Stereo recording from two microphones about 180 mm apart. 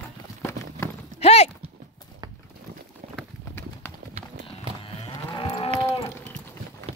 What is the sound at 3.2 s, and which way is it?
Clip-clop, 10° left (ahead or behind).